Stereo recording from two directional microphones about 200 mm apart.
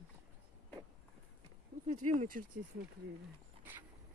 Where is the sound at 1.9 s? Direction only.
35° right (ahead or behind).